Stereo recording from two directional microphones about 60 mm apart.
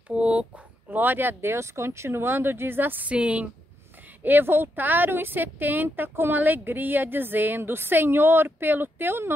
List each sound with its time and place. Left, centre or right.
0.1 s a woman's voice: right
0.8 s a woman's voice: right
3.1 s a woman's voice: right
4.2 s a woman's voice: right